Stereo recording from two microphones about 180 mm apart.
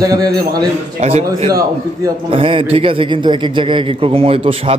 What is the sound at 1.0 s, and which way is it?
A man's voice, 35° right (ahead or behind).